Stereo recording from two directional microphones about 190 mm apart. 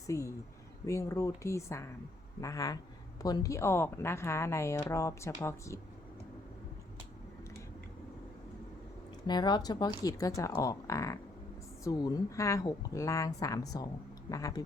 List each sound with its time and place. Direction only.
0.1 s speech: 15° left (ahead or behind)
9.2 s speech: 20° left (ahead or behind)